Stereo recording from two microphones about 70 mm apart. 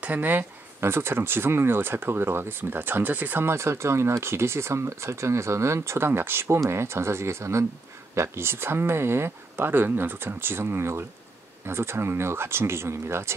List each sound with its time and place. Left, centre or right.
0.0 s speech: right